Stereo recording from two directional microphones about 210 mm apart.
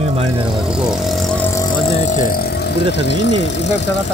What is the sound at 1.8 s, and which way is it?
Speech, 30° left (ahead or behind).